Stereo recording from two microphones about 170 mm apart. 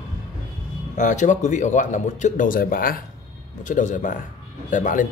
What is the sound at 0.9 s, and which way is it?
Speech, 45° left (ahead or behind).